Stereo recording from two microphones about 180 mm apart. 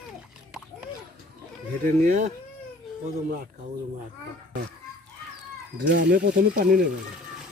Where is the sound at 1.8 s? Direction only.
45° right (ahead or behind).